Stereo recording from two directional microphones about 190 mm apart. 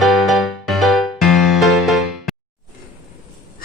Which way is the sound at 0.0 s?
Centre (ahead or behind).